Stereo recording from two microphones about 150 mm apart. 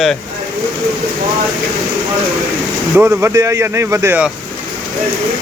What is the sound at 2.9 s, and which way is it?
Speech, 15° right (ahead or behind).